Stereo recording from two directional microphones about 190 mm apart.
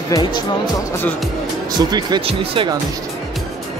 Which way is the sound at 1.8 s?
20° right (ahead or behind).